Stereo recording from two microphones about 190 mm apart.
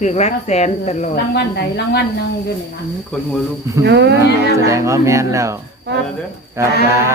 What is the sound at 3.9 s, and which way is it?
Speech, 65° right (ahead or behind).